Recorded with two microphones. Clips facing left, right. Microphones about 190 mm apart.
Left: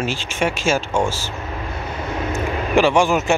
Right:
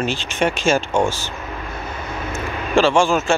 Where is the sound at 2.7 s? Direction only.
15° left (ahead or behind).